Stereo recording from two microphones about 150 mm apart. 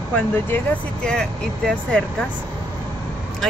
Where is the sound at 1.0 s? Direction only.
5° left (ahead or behind).